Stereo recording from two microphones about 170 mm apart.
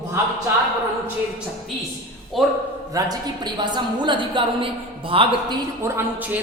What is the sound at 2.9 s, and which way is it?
A woman's voice, 25° right (ahead or behind).